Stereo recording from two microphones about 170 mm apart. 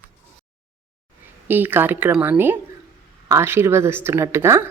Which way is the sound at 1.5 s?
10° right (ahead or behind).